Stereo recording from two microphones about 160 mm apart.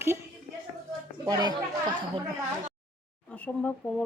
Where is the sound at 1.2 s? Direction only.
25° right (ahead or behind).